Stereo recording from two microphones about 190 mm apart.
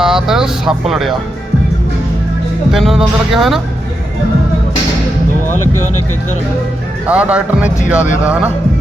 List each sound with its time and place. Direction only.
0.0 s speech: 5° right (ahead or behind)
2.7 s speech: centre (ahead or behind)
7.1 s speech: 5° right (ahead or behind)